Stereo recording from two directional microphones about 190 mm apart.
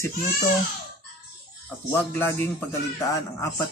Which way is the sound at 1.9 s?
10° left (ahead or behind).